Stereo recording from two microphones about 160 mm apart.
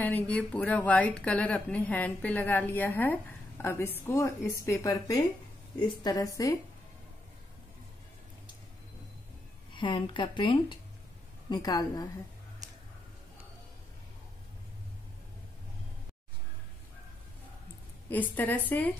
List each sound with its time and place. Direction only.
0.0 s speech: 10° left (ahead or behind)
9.7 s speech: 30° left (ahead or behind)
18.1 s speech: 10° left (ahead or behind)